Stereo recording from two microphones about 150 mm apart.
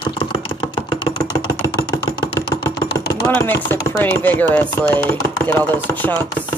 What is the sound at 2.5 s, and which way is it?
Chopping, 25° left (ahead or behind).